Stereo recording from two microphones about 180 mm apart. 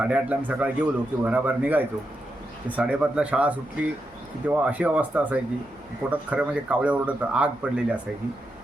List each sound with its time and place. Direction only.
0.0 s a man's voice: 10° right (ahead or behind)